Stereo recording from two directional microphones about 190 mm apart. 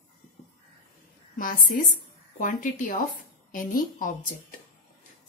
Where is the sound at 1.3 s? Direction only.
45° left (ahead or behind).